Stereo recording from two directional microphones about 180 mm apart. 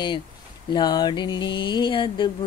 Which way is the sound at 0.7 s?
25° left (ahead or behind).